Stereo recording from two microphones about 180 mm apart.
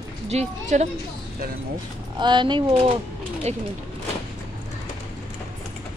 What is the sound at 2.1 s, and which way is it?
Speech, 25° right (ahead or behind).